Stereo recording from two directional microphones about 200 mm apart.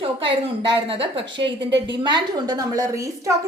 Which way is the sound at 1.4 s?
60° right (ahead or behind).